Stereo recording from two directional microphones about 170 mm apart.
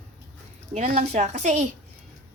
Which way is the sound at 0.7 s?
45° right (ahead or behind).